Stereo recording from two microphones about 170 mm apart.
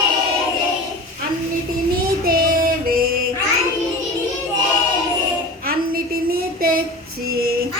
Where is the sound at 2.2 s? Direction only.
60° right (ahead or behind).